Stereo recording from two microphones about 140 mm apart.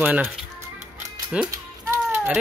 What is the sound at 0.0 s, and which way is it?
Speech, 10° right (ahead or behind).